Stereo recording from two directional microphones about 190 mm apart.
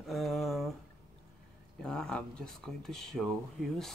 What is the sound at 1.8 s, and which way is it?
Speech, 5° left (ahead or behind).